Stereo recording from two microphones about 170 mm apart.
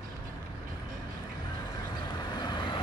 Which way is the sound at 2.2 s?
25° left (ahead or behind).